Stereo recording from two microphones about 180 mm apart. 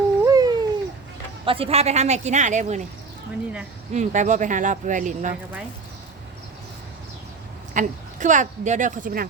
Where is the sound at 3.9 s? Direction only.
40° right (ahead or behind).